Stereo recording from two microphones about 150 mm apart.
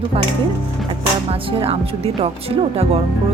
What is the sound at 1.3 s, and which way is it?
Speech, 40° right (ahead or behind).